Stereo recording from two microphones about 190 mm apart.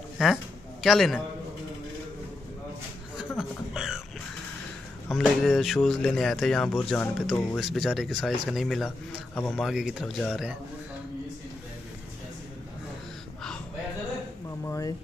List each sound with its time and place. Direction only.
0.8 s speech: centre (ahead or behind)
3.2 s chuckle: centre (ahead or behind)
5.1 s speech: centre (ahead or behind)
14.6 s speech: 15° left (ahead or behind)